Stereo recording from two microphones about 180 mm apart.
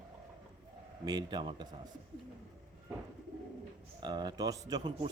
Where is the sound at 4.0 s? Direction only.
25° right (ahead or behind).